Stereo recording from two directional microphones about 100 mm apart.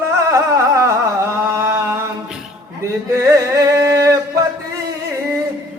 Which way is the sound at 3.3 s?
30° right (ahead or behind).